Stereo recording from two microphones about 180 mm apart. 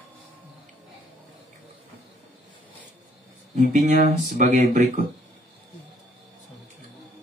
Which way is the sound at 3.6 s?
40° right (ahead or behind).